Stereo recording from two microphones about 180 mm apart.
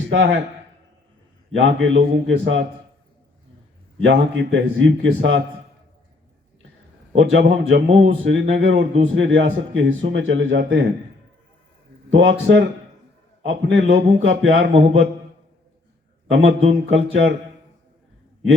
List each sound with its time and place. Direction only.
0.1 s a man's voice: 90° right
1.5 s a man's voice: 90° right
2.0 s a man's voice: 65° right (ahead or behind)
4.0 s a man's voice: 75° right (ahead or behind)
7.2 s a man's voice: 90° right
12.1 s a man's voice: 90° right
16.3 s a man's voice: 90° right